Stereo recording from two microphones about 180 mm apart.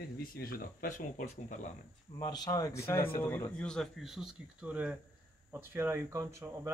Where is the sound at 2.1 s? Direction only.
20° left (ahead or behind).